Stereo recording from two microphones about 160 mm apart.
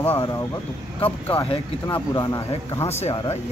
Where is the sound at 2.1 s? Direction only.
20° left (ahead or behind).